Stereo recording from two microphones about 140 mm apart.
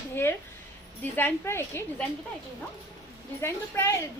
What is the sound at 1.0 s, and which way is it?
Speech, 15° left (ahead or behind).